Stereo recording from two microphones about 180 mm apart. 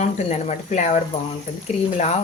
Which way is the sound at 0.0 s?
40° left (ahead or behind).